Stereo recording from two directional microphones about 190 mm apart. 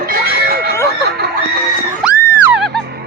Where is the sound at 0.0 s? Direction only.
55° right (ahead or behind).